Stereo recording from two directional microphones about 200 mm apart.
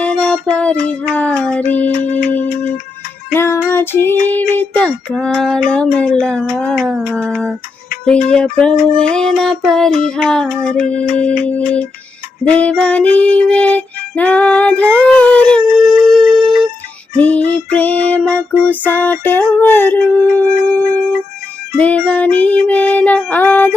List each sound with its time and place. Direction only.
0.0 s music: 5° left (ahead or behind)
1.9 s music: 35° left (ahead or behind)
3.3 s music: 15° left (ahead or behind)
3.7 s child singing: 10° left (ahead or behind)
11.4 s music: 5° left (ahead or behind)